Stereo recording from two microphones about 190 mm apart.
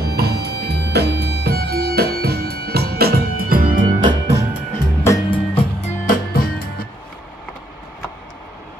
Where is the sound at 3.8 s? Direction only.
25° right (ahead or behind).